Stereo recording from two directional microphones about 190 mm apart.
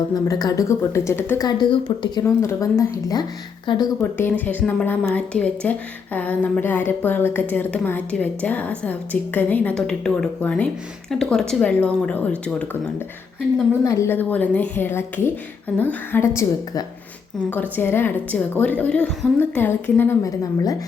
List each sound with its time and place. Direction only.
0.1 s a woman's voice: 20° left (ahead or behind)
2.2 s a woman's voice: 15° left (ahead or behind)
4.0 s a woman's voice: 10° left (ahead or behind)
13.8 s a woman's voice: 15° left (ahead or behind)